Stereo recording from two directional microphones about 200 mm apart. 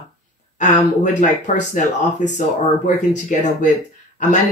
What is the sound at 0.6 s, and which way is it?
Speech, 40° left (ahead or behind).